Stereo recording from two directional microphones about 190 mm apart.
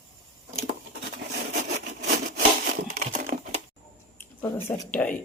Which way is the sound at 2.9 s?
40° right (ahead or behind).